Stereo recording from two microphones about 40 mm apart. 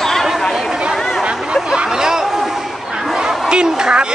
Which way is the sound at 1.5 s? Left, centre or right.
Centre.